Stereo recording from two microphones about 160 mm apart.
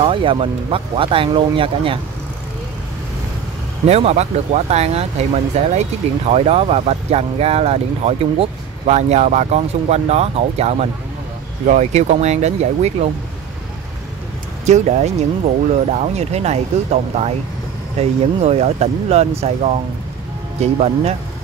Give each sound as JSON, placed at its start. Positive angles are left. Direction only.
{"t": 0.0, "sound": "speech", "side_deg": -35}
{"t": 3.8, "sound": "speech", "side_deg": -40}
{"t": 14.7, "sound": "speech", "side_deg": -45}